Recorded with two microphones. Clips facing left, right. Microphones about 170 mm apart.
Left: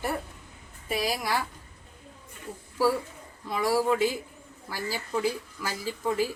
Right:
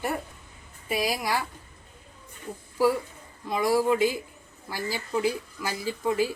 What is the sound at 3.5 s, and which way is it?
Speech, 15° right (ahead or behind).